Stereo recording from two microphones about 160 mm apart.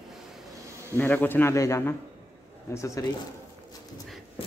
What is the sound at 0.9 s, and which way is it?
A man's voice, 10° left (ahead or behind).